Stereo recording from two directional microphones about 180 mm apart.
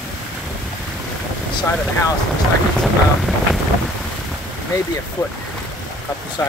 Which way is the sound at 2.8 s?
Centre (ahead or behind).